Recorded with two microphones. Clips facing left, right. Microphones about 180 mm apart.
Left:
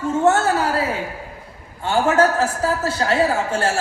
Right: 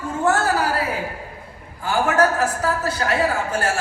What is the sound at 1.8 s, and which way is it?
A man's voice, 25° left (ahead or behind).